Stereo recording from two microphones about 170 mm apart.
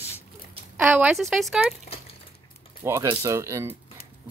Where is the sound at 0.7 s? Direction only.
15° right (ahead or behind).